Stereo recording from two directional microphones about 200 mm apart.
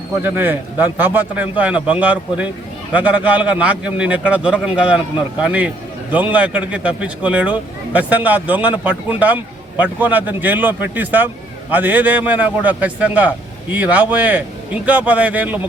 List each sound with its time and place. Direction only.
0.2 s a man's voice: 10° right (ahead or behind)